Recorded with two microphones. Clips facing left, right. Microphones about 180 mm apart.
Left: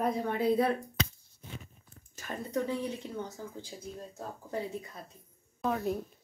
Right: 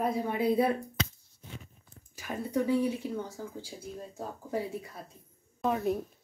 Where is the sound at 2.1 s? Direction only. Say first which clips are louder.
Right 3 dB; 10° right (ahead or behind).